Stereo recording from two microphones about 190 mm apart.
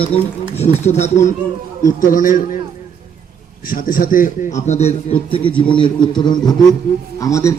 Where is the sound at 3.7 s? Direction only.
50° left (ahead or behind); by 7.5 s 15° left (ahead or behind).